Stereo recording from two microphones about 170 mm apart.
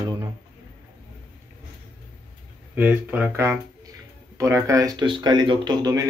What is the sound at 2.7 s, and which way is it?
Speech, 10° right (ahead or behind).